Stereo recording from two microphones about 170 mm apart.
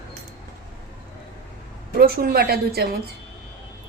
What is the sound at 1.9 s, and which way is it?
Speech, 60° right (ahead or behind).